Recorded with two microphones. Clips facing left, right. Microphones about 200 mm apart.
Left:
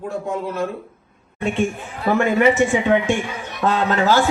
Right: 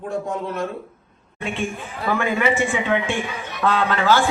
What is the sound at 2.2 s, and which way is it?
A man's voice, 45° left (ahead or behind).